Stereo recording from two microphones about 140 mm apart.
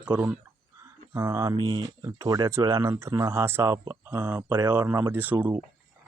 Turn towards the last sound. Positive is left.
turn(degrees=-10)  # may be behind; listen again after turning